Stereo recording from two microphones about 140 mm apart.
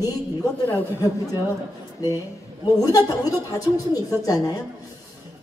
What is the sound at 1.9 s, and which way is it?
A woman's voice, 25° left (ahead or behind).